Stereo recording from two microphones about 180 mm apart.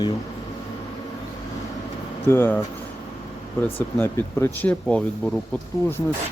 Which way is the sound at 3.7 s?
15° left (ahead or behind).